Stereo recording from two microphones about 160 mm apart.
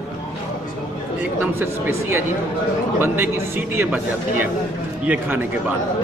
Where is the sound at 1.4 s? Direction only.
15° right (ahead or behind).